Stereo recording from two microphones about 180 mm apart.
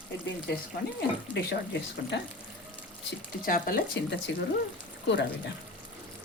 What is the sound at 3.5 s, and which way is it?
Speech, 50° left (ahead or behind).